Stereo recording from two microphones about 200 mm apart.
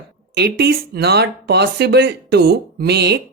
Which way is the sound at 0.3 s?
55° right (ahead or behind).